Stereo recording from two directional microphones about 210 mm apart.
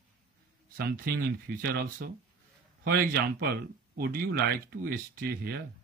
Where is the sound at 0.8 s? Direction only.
45° right (ahead or behind).